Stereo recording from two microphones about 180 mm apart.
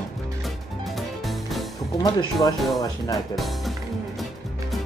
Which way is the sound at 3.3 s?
Centre (ahead or behind).